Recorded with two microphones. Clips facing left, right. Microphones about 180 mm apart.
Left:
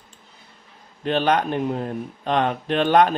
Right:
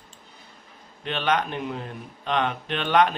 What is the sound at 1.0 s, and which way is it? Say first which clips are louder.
Speech: left 5 dB; 40° left (ahead or behind).